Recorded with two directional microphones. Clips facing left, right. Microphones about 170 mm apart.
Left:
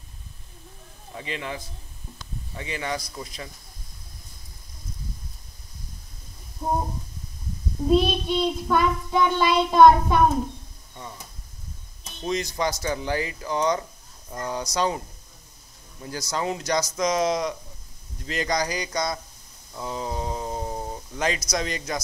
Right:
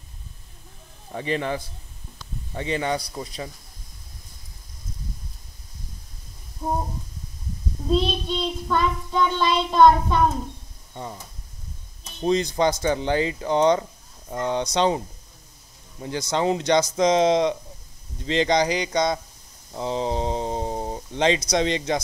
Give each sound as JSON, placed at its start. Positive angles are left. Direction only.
{"t": 1.1, "sound": "a man's voice", "side_deg": -35}
{"t": 6.6, "sound": "child singing", "side_deg": 10}
{"t": 7.9, "sound": "child singing", "side_deg": 10}
{"t": 12.2, "sound": "speech", "side_deg": -30}
{"t": 19.7, "sound": "a sound", "side_deg": -25}
{"t": 21.5, "sound": "speech", "side_deg": -25}